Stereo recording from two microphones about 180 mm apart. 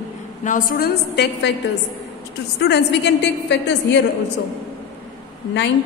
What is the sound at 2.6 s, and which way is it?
A woman's voice, 70° left (ahead or behind).